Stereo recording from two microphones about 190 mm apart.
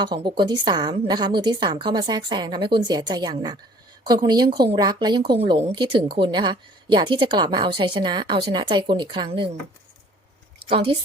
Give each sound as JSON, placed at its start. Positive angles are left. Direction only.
{"t": 0.0, "sound": "a woman's voice", "side_deg": -25}
{"t": 10.7, "sound": "a woman's voice", "side_deg": -25}